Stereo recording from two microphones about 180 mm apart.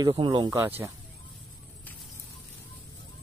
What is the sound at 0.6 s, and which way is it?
Speech, 10° right (ahead or behind).